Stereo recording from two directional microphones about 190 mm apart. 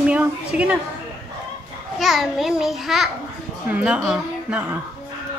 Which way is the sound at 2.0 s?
Centre (ahead or behind).